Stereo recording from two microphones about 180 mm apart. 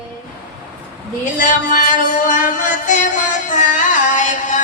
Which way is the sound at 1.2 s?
45° left (ahead or behind).